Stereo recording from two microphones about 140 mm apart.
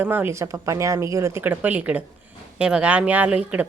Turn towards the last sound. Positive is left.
turn(degrees=-10)  # may be behind; listen again after turning